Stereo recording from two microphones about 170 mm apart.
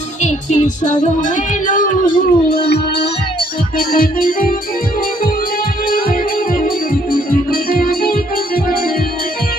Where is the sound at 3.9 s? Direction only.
55° left (ahead or behind).